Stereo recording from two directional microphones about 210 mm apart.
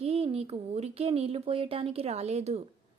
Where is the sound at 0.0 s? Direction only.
30° right (ahead or behind).